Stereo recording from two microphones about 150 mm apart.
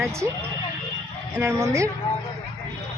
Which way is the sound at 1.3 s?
15° right (ahead or behind).